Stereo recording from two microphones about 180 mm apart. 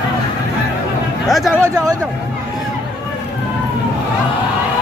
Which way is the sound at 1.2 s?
Centre (ahead or behind).